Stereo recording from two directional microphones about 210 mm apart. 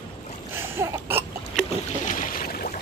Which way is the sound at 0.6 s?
10° right (ahead or behind).